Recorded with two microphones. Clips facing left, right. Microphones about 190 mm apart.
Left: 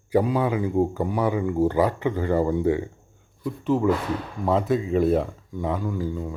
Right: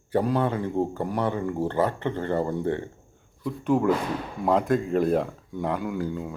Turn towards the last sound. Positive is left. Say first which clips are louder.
# left 1 dB
turn(degrees=-5)  # may be behind; listen again after turning